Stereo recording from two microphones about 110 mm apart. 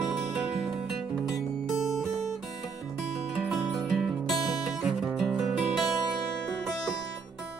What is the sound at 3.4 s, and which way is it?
Music, centre (ahead or behind).